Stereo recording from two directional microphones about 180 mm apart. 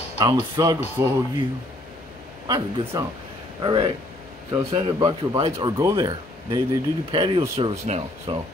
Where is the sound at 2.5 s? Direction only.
20° right (ahead or behind).